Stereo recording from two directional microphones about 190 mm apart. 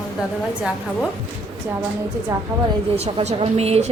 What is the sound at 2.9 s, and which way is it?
Speech, 35° right (ahead or behind).